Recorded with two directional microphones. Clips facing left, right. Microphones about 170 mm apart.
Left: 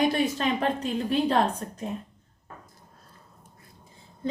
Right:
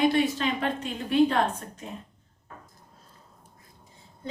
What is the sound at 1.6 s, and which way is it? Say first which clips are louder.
Speech: left 5 dB; 35° left (ahead or behind).